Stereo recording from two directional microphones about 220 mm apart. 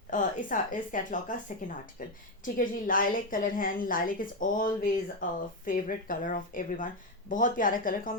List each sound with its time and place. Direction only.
0.1 s a woman's voice: 35° left (ahead or behind)